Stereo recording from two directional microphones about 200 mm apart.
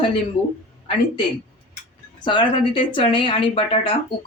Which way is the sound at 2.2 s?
25° left (ahead or behind).